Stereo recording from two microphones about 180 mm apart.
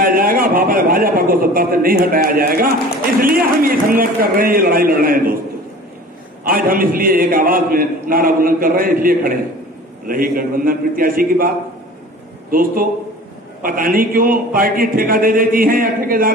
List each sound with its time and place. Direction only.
0.0 s a man's voice: 50° right (ahead or behind)
6.4 s a man's voice: 50° right (ahead or behind)